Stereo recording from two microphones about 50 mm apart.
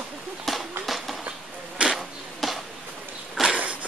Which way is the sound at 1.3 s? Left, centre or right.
Right.